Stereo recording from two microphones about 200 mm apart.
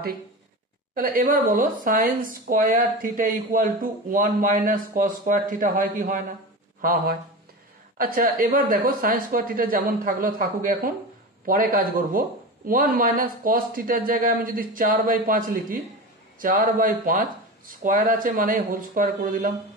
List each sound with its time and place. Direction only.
0.9 s a man's voice: 45° right (ahead or behind)